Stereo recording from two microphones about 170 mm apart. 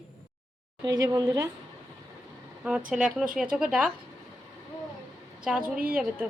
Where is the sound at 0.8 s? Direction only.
25° right (ahead or behind).